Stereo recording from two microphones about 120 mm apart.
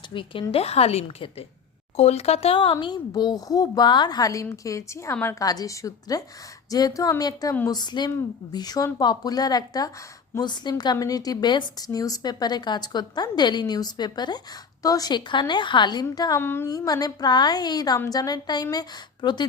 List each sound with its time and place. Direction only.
0.1 s a woman's voice: 45° left (ahead or behind)
0.5 s a woman's voice: 60° left (ahead or behind)
2.8 s a woman's voice: 35° left (ahead or behind); by 5.4 s 20° left (ahead or behind)
5.4 s a woman's voice: 30° left (ahead or behind)
16.4 s a woman's voice: 20° left (ahead or behind)
16.6 s speech: 30° left (ahead or behind)